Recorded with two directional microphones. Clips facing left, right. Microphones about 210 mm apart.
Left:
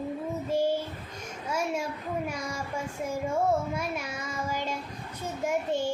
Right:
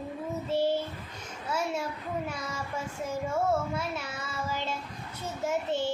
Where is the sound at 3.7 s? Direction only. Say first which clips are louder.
Left 1 dB; 15° left (ahead or behind).